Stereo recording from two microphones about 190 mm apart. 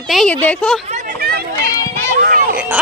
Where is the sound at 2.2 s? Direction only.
50° right (ahead or behind).